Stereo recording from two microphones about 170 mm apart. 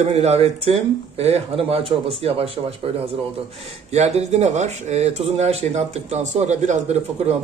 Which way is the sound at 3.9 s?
40° right (ahead or behind).